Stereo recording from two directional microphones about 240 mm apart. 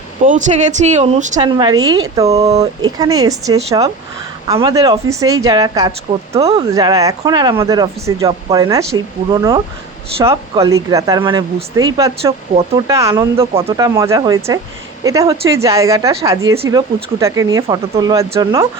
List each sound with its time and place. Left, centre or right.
0.3 s speech: right
1.4 s speech: centre
2.2 s speech: right
3.0 s speech: centre
6.7 s speech: centre